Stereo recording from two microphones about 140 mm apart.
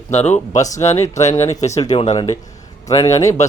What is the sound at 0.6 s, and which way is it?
Speech, 50° left (ahead or behind).